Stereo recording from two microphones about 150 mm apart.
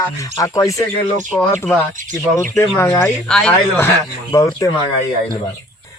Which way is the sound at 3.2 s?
5° left (ahead or behind).